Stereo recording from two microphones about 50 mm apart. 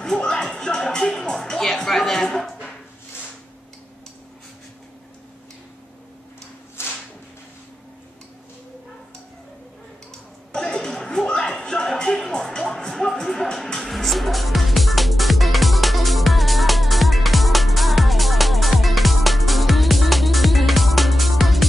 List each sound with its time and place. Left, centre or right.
0.0 s music: centre
0.6 s speech: centre
6.8 s a sound: left
10.5 s music: centre